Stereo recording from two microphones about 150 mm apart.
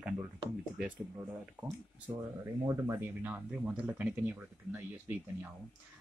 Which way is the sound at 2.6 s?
20° right (ahead or behind).